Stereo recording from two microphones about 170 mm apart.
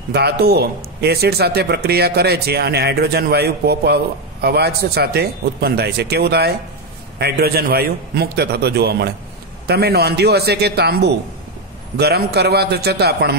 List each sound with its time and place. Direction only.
0.1 s a man's voice: 70° right (ahead or behind)